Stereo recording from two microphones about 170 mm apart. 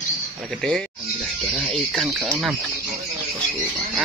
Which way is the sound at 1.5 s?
Centre (ahead or behind).